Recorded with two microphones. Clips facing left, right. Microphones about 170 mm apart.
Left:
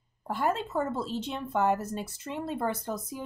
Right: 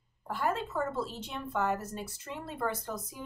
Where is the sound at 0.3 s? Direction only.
20° left (ahead or behind).